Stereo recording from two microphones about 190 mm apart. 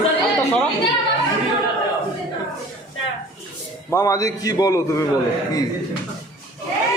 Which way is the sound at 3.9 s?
20° left (ahead or behind).